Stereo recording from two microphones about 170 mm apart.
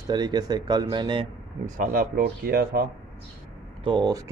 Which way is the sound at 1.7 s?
50° right (ahead or behind).